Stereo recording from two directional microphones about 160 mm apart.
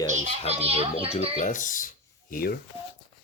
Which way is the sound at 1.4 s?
50° left (ahead or behind).